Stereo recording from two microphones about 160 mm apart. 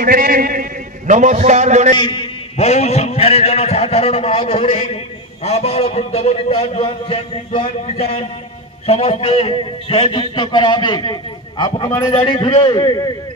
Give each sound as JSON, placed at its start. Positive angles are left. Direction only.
{"t": 0.0, "sound": "a man's voice", "side_deg": -60}
{"t": 2.0, "sound": "a man's voice", "side_deg": 30}